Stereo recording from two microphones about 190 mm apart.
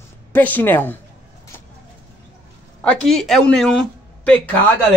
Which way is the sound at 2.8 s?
5° left (ahead or behind).